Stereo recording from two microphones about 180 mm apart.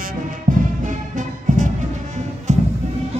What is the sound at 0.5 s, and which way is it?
Music, 45° right (ahead or behind).